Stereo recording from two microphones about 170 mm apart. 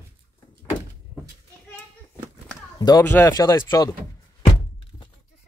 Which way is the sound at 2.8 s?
25° left (ahead or behind).